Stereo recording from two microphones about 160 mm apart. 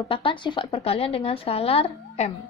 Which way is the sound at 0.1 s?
30° left (ahead or behind).